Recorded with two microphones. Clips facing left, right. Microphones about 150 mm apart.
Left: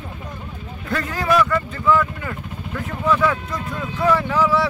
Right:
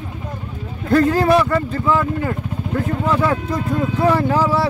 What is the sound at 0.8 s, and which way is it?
Speech, 35° right (ahead or behind).